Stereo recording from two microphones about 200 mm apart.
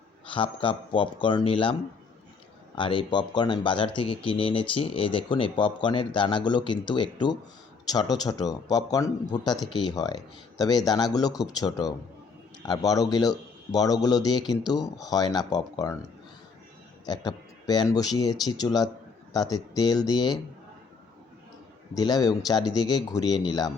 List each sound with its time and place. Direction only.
0.3 s speech: 25° left (ahead or behind)
2.7 s speech: 25° left (ahead or behind)
17.1 s speech: 20° left (ahead or behind)
21.9 s speech: 20° left (ahead or behind)